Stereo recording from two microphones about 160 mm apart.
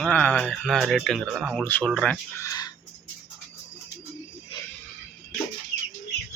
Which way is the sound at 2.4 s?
20° left (ahead or behind).